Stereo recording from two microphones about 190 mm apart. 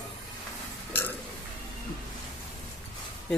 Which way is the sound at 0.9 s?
10° left (ahead or behind).